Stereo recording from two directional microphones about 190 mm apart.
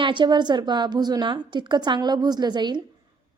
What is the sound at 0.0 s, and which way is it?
A woman's voice, 25° right (ahead or behind).